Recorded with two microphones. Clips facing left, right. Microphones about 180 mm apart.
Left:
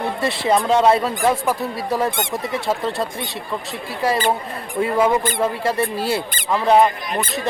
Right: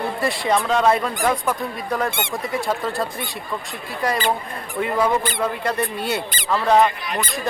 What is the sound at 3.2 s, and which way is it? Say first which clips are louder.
Speech: left 2 dB; centre (ahead or behind).